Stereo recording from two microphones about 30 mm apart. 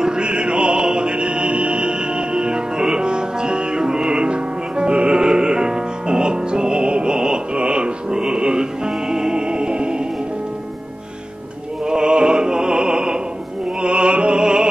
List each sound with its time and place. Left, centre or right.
0.0 s music: right
5.1 s music: centre
7.5 s music: right
11.8 s opera: right
14.4 s music: right